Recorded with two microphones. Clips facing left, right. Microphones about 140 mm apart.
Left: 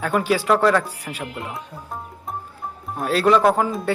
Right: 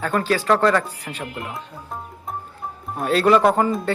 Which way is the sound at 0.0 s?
10° left (ahead or behind).